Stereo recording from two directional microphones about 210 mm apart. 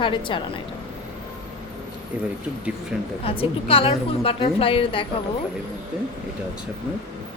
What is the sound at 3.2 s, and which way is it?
A woman's voice, 25° left (ahead or behind).